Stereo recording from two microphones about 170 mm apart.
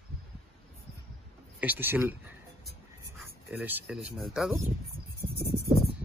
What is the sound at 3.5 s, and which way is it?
Speech, 10° right (ahead or behind).